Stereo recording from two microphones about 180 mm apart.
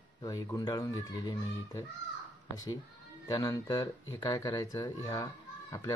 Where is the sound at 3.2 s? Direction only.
20° left (ahead or behind).